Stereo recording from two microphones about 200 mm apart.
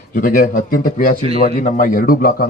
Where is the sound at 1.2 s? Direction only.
30° right (ahead or behind).